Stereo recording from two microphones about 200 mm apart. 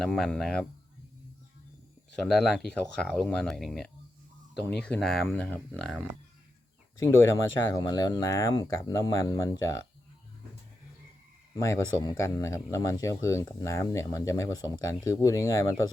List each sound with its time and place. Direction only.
0.0 s speech: 5° left (ahead or behind)
2.1 s speech: 5° left (ahead or behind)
7.0 s speech: 15° left (ahead or behind)
12.0 s speech: 15° left (ahead or behind)